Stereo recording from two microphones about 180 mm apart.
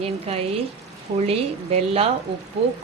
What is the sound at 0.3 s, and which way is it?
Speech, 35° right (ahead or behind).